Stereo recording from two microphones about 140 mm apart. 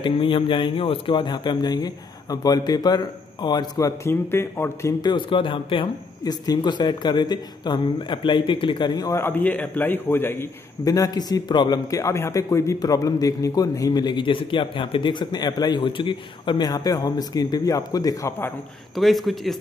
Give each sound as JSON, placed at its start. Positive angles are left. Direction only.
{"t": 0.0, "sound": "a man's voice", "side_deg": 35}
{"t": 5.0, "sound": "speech", "side_deg": 35}
{"t": 9.2, "sound": "a man's voice", "side_deg": 10}
{"t": 18.9, "sound": "speech", "side_deg": 0}